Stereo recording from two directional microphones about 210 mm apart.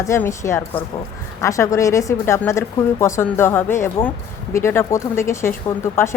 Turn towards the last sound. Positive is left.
turn(degrees=10)  # may be behind; listen again after turning